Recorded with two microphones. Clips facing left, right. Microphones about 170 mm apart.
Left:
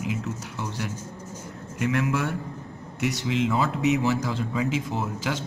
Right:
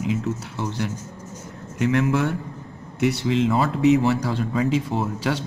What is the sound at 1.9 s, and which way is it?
Speech, 45° right (ahead or behind).